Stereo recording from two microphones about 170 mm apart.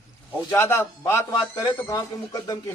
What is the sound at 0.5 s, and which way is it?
A man's voice, 15° left (ahead or behind).